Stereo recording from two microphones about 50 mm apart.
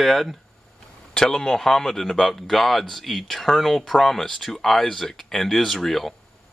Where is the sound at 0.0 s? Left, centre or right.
Centre.